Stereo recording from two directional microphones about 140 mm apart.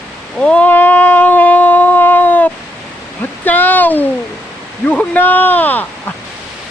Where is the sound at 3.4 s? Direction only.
15° left (ahead or behind).